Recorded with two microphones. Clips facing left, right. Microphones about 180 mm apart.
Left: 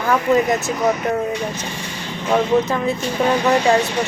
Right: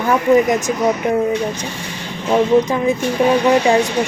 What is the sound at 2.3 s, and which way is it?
Speech, 15° right (ahead or behind).